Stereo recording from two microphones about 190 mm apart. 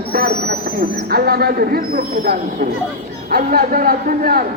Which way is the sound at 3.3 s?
50° right (ahead or behind).